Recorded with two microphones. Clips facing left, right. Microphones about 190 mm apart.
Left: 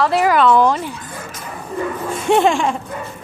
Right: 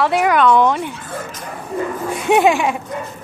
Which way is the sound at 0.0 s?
Centre (ahead or behind).